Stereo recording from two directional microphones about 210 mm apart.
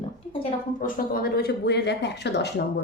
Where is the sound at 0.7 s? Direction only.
40° left (ahead or behind).